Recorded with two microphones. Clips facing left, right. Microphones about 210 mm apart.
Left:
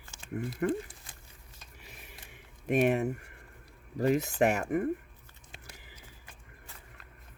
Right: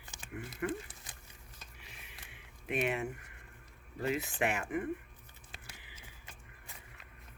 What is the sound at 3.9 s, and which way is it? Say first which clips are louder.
Speech: left 8 dB; 40° left (ahead or behind).